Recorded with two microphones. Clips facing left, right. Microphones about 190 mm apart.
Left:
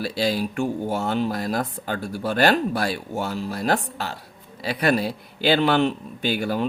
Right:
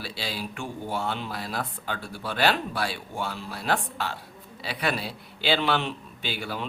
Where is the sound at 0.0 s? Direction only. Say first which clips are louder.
Left 11 dB; 45° left (ahead or behind).